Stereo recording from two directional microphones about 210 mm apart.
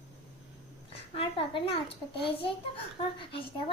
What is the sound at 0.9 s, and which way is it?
A child's voice, 25° left (ahead or behind).